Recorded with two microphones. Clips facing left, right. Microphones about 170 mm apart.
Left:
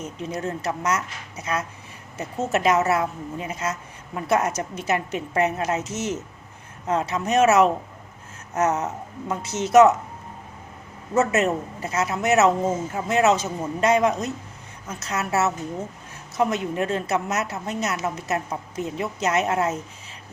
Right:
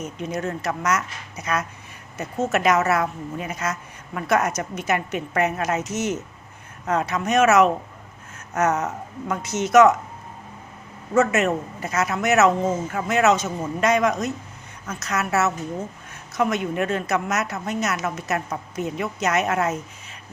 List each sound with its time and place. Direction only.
0.0 s a woman's voice: 30° left (ahead or behind)
11.1 s a woman's voice: 35° left (ahead or behind)